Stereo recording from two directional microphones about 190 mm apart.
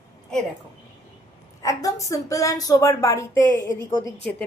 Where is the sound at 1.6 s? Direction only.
15° left (ahead or behind).